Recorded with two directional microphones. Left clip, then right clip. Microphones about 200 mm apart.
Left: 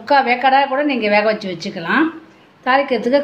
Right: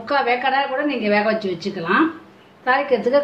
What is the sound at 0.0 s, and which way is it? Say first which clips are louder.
A woman's voice: left 5 dB; 55° left (ahead or behind).